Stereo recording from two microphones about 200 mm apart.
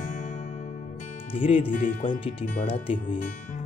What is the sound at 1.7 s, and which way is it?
Speech, 40° left (ahead or behind).